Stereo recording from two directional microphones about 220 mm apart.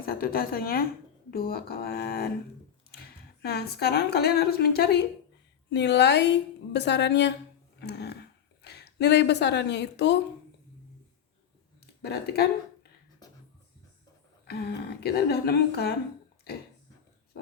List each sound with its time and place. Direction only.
0.0 s a woman's voice: 40° left (ahead or behind)
3.4 s a woman's voice: 45° left (ahead or behind)
7.8 s a sound: 50° left (ahead or behind)
8.6 s a woman's voice: 45° left (ahead or behind)
12.0 s a woman's voice: 45° left (ahead or behind)
14.4 s a woman's voice: 45° left (ahead or behind)